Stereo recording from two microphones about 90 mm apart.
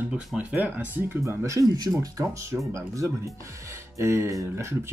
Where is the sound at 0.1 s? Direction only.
5° right (ahead or behind).